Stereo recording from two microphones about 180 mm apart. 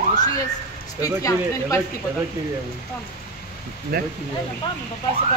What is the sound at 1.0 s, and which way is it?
Speech, 20° left (ahead or behind).